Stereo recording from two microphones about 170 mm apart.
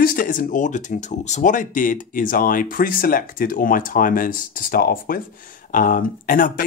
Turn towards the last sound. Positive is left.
turn(degrees=55)  # may be behind; listen again after turning